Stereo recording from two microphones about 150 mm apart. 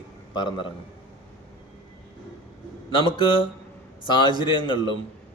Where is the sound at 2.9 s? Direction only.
35° left (ahead or behind).